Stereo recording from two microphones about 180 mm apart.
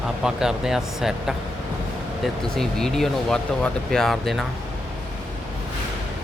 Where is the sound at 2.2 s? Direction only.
Centre (ahead or behind).